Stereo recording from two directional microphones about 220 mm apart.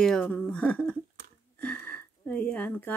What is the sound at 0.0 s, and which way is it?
Speech, 5° left (ahead or behind).